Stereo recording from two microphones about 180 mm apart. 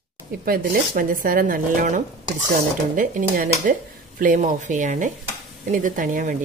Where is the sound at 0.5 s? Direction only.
50° right (ahead or behind).